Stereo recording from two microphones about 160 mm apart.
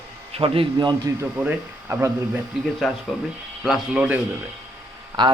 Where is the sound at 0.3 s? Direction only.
35° right (ahead or behind).